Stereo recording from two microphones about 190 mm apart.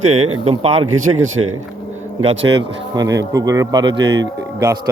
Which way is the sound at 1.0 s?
90° right.